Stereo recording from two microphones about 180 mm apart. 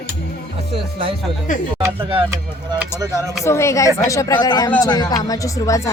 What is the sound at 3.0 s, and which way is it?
Speech, 20° right (ahead or behind).